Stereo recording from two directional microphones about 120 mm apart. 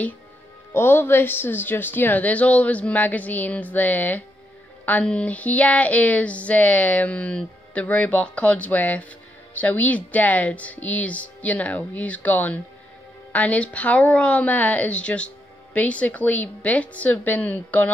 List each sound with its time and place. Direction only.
0.7 s a woman's voice: 20° left (ahead or behind)